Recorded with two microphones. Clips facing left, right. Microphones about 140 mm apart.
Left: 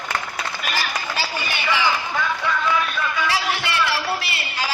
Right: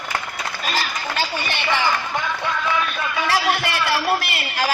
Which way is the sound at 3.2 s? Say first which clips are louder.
Right 6 dB; 60° right (ahead or behind).